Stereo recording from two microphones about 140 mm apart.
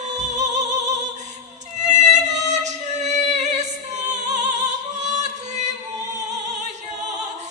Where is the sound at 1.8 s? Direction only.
55° right (ahead or behind).